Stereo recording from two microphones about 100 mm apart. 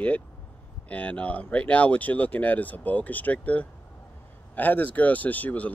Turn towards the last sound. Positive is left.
turn(degrees=15)  # may be behind; listen again after turning